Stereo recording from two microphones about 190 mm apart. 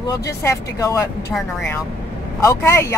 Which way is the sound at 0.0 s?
20° left (ahead or behind).